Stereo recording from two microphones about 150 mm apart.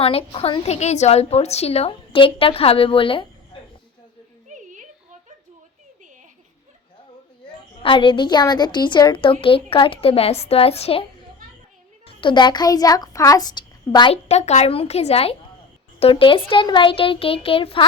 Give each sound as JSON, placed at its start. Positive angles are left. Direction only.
{"t": 0.0, "sound": "a woman's voice", "side_deg": 40}
{"t": 3.5, "sound": "a sound", "side_deg": 35}
{"t": 4.4, "sound": "a sound", "side_deg": -55}
{"t": 7.8, "sound": "a woman's voice", "side_deg": 35}
{"t": 12.0, "sound": "a child's voice", "side_deg": 30}
{"t": 14.3, "sound": "a woman's voice", "side_deg": 45}